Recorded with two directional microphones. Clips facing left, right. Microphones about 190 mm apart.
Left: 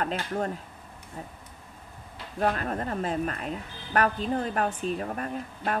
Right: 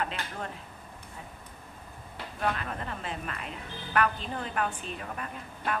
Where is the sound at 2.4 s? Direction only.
40° left (ahead or behind).